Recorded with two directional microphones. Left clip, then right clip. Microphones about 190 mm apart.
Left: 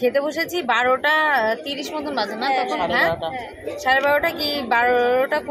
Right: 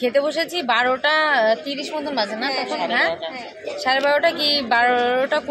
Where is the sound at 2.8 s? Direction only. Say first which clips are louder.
Right 3 dB; 45° left (ahead or behind).